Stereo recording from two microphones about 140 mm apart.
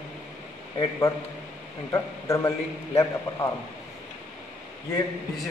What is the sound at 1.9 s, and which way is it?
A man's voice, 25° left (ahead or behind).